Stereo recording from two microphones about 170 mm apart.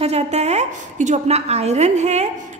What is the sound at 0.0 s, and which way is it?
A woman's voice, 40° right (ahead or behind).